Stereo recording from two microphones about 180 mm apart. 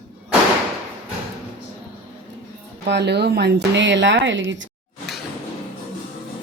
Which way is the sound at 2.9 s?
70° right (ahead or behind).